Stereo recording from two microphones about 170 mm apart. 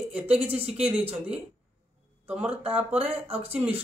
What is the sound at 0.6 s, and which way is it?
Speech, 35° right (ahead or behind).